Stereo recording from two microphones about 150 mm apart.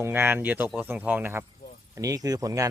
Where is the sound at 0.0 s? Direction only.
15° right (ahead or behind).